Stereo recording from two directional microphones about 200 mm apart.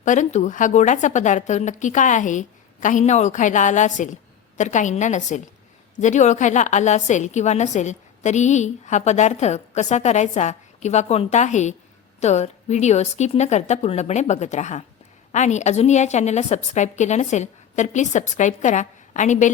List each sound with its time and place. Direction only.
0.0 s a woman's voice: 40° left (ahead or behind)